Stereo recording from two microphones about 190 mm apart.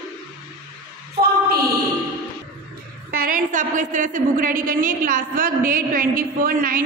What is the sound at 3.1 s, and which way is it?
A woman's voice, 45° right (ahead or behind).